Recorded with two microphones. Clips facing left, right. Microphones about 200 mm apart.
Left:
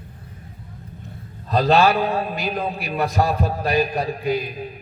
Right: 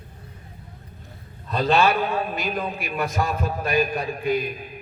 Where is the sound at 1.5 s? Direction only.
35° left (ahead or behind).